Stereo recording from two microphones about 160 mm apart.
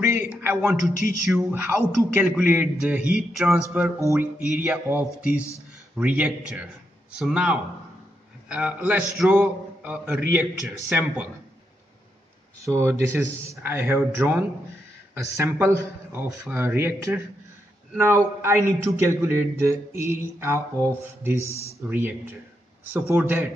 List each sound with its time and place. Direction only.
0.0 s a man's voice: 15° right (ahead or behind)
0.7 s speech: 55° left (ahead or behind)
1.3 s speech: 15° right (ahead or behind)
3.7 s speech: 15° right (ahead or behind)
12.5 s speech: 20° right (ahead or behind)